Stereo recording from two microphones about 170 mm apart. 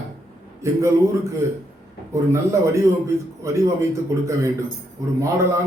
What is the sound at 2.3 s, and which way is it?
A man's voice, 15° right (ahead or behind).